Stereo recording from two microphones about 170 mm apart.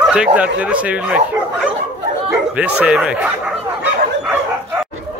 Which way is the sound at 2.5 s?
5° right (ahead or behind).